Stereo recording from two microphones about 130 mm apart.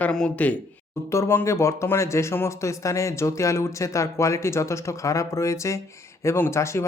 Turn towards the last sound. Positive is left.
turn(degrees=20)  # may be behind; listen again after turning